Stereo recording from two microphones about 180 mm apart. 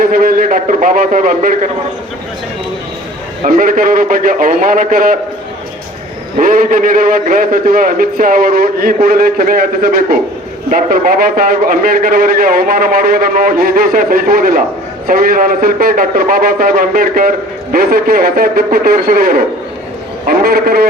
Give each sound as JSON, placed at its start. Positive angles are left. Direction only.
{"t": 0.0, "sound": "a man's voice", "side_deg": -55}
{"t": 3.4, "sound": "a man's voice", "side_deg": -50}
{"t": 6.3, "sound": "a man's voice", "side_deg": -50}